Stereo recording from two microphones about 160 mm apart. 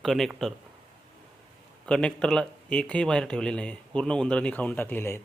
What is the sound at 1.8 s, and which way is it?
A man's voice, 5° left (ahead or behind).